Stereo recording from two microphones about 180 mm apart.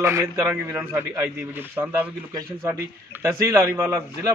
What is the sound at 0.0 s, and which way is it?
A man's voice, 15° right (ahead or behind).